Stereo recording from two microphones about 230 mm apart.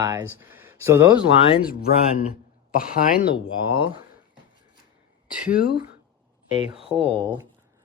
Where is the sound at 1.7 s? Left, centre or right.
Left.